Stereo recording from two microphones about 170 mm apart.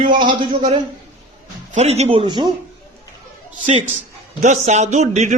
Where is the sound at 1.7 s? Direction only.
40° right (ahead or behind).